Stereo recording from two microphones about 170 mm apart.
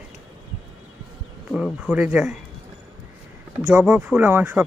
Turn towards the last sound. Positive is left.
turn(degrees=-15)  # may be behind; listen again after turning